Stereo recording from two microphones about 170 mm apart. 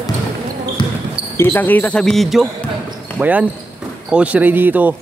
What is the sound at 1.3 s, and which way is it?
Speech, 15° left (ahead or behind).